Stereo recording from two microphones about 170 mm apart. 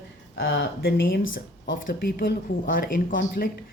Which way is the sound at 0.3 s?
80° left.